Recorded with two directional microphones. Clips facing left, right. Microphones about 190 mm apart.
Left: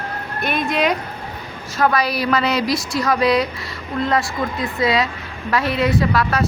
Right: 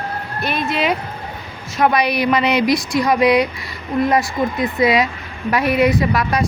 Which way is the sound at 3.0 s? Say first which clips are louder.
Right 2 dB; 15° right (ahead or behind).